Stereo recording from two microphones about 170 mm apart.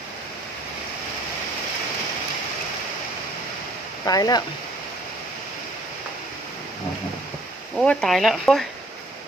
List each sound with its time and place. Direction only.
4.0 s speech: 20° left (ahead or behind)
7.8 s speech: centre (ahead or behind)